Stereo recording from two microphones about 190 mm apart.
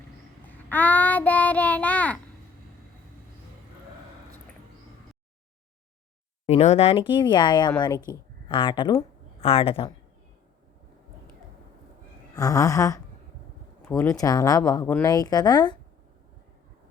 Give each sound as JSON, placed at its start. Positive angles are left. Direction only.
{"t": 0.4, "sound": "child singing", "side_deg": 10}
{"t": 6.4, "sound": "speech", "side_deg": 35}
{"t": 12.3, "sound": "a sound", "side_deg": 20}
{"t": 13.8, "sound": "speech", "side_deg": 15}